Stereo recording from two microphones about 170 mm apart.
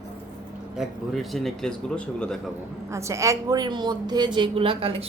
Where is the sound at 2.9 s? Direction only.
15° right (ahead or behind); by 5.0 s 35° right (ahead or behind).